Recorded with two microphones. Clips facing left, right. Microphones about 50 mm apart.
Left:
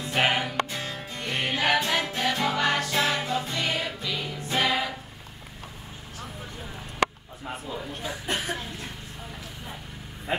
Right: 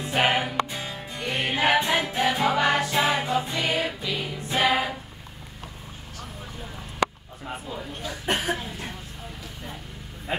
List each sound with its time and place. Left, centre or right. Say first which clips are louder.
0.1 s music: right 2 dB; centre
4.5 s choir: right 3 dB; centre
7.4 s a man's voice: even; centre
8.5 s a sound: right 2 dB; centre